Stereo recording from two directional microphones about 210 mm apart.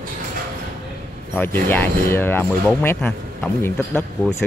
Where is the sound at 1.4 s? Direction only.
10° left (ahead or behind).